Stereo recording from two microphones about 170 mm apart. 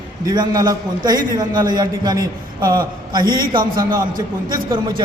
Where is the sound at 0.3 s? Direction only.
20° right (ahead or behind).